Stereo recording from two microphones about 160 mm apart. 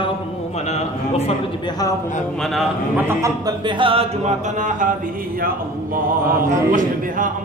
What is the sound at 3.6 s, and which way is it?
Music, 30° right (ahead or behind).